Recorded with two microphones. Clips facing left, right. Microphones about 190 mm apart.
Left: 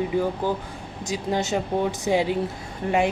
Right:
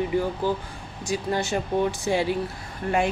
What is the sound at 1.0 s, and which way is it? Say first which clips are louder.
Speech: even; 20° left (ahead or behind).